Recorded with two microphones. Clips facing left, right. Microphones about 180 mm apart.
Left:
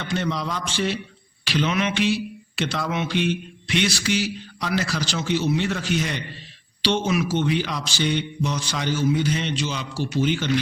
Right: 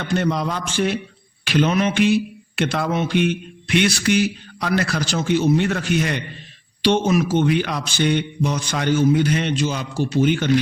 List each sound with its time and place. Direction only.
0.0 s speech: 50° right (ahead or behind)